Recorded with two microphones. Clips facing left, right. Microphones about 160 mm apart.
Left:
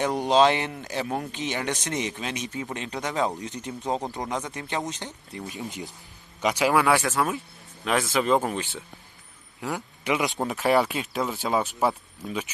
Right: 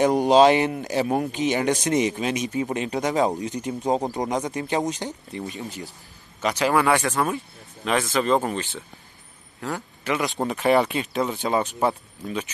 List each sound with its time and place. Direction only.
0.0 s speech: 10° right (ahead or behind)
4.3 s speech: 40° right (ahead or behind)
4.6 s speech: 10° right (ahead or behind)
5.7 s a man's voice: 20° left (ahead or behind)
10.4 s speech: centre (ahead or behind)